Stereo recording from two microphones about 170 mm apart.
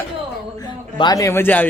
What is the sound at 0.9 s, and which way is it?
Speech, 25° left (ahead or behind).